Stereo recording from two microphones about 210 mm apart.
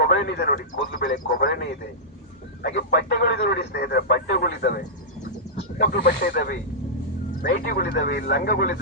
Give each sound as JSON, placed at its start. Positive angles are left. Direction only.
{"t": 0.0, "sound": "speech", "side_deg": 55}
{"t": 5.8, "sound": "speech", "side_deg": 45}